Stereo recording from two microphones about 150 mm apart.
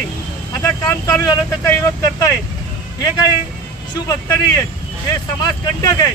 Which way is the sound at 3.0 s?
25° left (ahead or behind).